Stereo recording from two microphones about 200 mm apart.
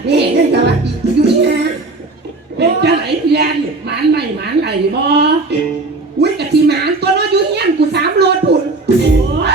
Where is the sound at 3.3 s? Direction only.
55° right (ahead or behind).